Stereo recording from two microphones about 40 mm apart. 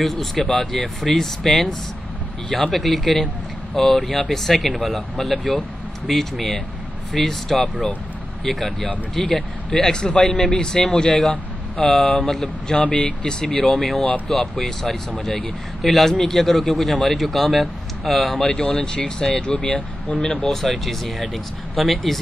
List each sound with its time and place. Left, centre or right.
0.0 s a man's voice: centre; by 11.8 s left
11.8 s speech: centre
18.5 s speech: left
20.6 s speech: centre